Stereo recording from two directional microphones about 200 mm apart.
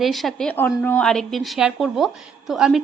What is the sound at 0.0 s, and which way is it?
A woman's voice, centre (ahead or behind).